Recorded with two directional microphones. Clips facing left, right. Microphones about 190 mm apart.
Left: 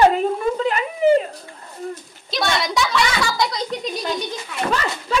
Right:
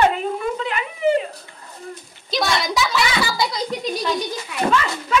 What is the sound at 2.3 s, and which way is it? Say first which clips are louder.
A woman's voice: even; centre (ahead or behind).